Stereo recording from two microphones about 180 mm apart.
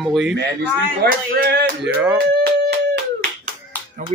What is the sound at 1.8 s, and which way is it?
Speech, 10° right (ahead or behind).